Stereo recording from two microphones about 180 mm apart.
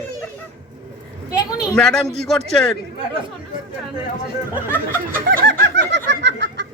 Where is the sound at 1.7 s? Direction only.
5° left (ahead or behind).